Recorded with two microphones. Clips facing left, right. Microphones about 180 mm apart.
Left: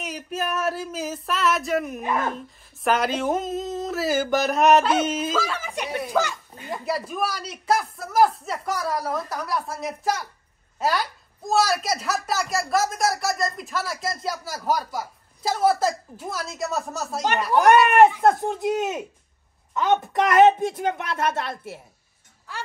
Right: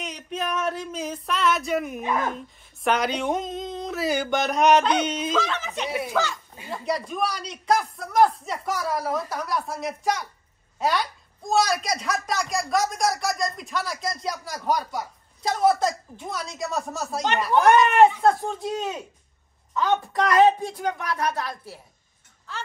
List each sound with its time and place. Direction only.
0.0 s a woman's voice: 5° left (ahead or behind)
5.9 s a woman's voice: 5° right (ahead or behind)
17.6 s speech: 10° left (ahead or behind)